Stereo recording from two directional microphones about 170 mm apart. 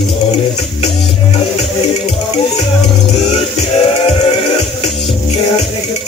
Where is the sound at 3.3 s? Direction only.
40° left (ahead or behind).